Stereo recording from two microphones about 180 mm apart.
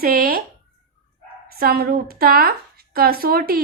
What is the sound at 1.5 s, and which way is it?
Speech, 55° right (ahead or behind).